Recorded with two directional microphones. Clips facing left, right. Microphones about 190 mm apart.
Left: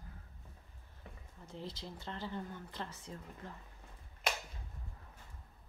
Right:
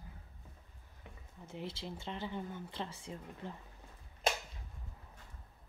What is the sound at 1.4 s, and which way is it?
Speech, 25° right (ahead or behind).